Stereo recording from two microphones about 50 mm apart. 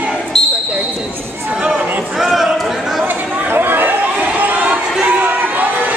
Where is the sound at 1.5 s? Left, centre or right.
Centre.